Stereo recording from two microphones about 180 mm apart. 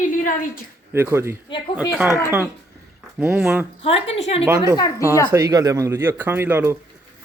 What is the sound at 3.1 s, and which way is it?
Speech, 10° right (ahead or behind).